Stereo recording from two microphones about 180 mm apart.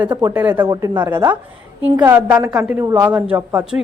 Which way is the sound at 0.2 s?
10° right (ahead or behind).